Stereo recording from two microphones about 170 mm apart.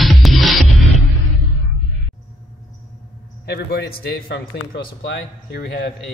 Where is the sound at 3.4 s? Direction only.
70° left (ahead or behind); by 5.8 s 90° left.